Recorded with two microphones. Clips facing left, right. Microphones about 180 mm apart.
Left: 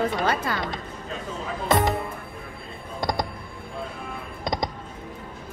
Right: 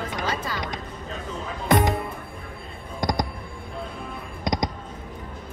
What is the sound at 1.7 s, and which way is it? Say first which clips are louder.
Music: right 1 dB; 20° right (ahead or behind).